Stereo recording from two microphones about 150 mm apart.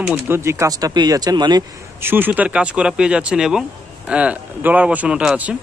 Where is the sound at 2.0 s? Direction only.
15° right (ahead or behind).